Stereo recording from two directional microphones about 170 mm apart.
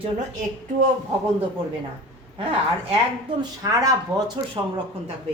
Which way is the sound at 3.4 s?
20° right (ahead or behind).